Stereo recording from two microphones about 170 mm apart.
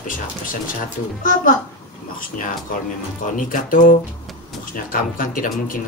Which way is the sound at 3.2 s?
50° left (ahead or behind).